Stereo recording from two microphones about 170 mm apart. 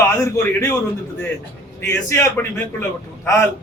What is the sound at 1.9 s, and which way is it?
Speech, 15° left (ahead or behind).